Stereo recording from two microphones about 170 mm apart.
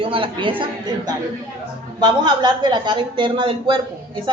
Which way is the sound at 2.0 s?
25° right (ahead or behind).